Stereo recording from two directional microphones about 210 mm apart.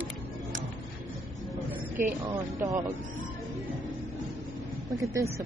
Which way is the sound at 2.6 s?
15° right (ahead or behind).